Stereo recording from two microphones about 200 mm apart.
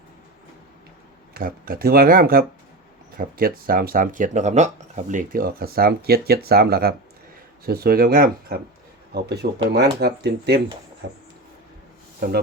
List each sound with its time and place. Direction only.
1.3 s speech: 45° right (ahead or behind)